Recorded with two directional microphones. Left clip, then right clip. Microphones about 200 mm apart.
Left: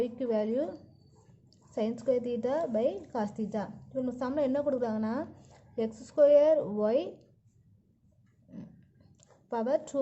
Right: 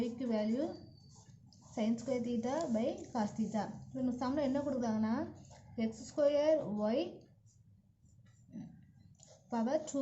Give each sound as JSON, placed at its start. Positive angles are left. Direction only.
{"t": 0.0, "sound": "a sound", "side_deg": 55}
{"t": 1.7, "sound": "a woman's voice", "side_deg": 60}
{"t": 9.5, "sound": "a woman's voice", "side_deg": 60}